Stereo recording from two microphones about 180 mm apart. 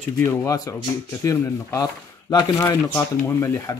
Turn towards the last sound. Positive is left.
turn(degrees=15)  # may be behind; listen again after turning